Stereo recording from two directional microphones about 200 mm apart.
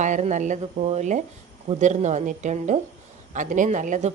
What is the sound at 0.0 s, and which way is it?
Speech, 35° right (ahead or behind).